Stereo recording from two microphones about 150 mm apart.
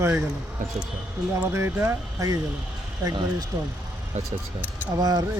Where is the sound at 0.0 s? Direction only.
15° right (ahead or behind).